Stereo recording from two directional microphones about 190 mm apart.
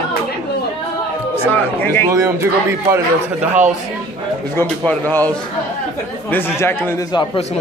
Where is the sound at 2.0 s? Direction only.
10° right (ahead or behind).